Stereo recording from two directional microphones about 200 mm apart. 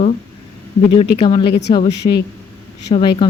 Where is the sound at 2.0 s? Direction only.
35° left (ahead or behind).